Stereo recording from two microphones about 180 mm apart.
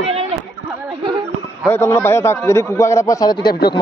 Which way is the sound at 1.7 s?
15° left (ahead or behind).